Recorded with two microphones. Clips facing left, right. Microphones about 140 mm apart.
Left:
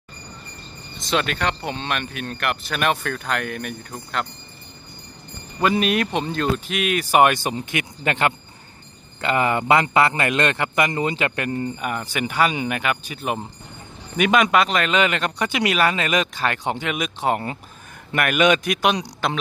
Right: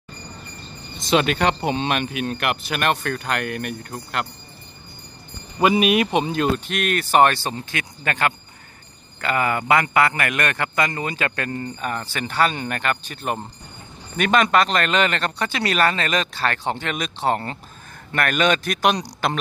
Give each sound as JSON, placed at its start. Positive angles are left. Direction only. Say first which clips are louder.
{"t": 1.1, "sound": "speech", "louder": "right 4 dB", "side_deg": -15}
{"t": 5.6, "sound": "speech", "louder": "right 3 dB", "side_deg": -15}
{"t": 6.5, "sound": "speech", "louder": "even", "side_deg": 5}